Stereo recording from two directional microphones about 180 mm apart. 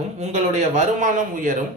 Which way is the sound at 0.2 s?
40° right (ahead or behind).